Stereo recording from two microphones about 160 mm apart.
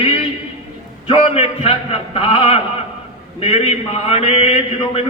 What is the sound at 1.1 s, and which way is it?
A man's voice, 40° left (ahead or behind).